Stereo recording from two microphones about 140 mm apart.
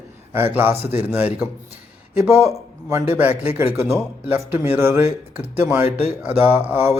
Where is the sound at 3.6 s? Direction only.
15° right (ahead or behind).